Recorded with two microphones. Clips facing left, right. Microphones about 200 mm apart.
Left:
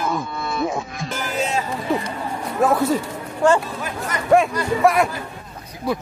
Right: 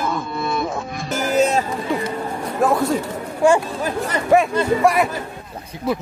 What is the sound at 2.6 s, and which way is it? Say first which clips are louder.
Speech: even; centre (ahead or behind).